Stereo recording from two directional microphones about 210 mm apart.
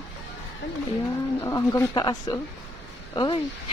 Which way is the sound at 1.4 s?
15° left (ahead or behind).